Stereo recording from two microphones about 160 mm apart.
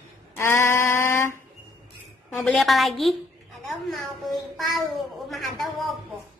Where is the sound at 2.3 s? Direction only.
Centre (ahead or behind).